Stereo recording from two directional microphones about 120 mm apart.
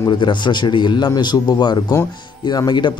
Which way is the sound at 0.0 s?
40° left (ahead or behind).